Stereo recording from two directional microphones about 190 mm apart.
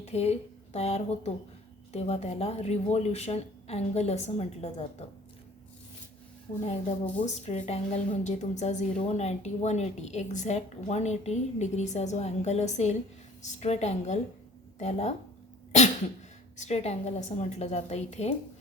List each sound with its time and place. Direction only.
0.0 s a woman's voice: 35° left (ahead or behind)
7.3 s a woman's voice: 35° left (ahead or behind)
16.6 s a woman's voice: 35° left (ahead or behind)